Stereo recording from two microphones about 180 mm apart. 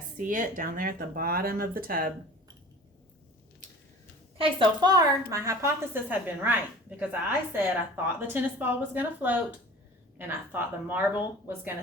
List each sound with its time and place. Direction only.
0.2 s speech: 45° right (ahead or behind)
4.4 s a woman's voice: 25° right (ahead or behind)